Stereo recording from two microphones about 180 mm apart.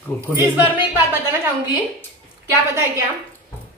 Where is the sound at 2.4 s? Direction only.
15° right (ahead or behind).